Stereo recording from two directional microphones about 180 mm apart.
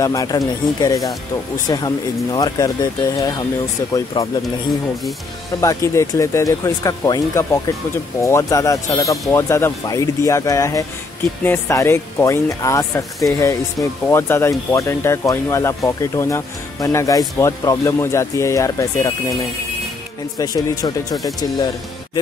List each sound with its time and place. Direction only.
0.0 s speech: 20° left (ahead or behind)
5.6 s speech: 15° left (ahead or behind)
20.3 s speech: 20° left (ahead or behind)